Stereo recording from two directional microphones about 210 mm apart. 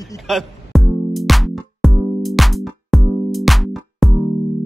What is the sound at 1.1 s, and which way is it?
Music, centre (ahead or behind).